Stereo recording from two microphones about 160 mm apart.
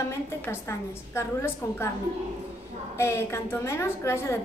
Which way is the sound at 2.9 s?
15° left (ahead or behind).